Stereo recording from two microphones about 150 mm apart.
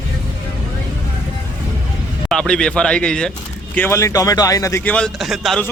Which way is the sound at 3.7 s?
15° left (ahead or behind).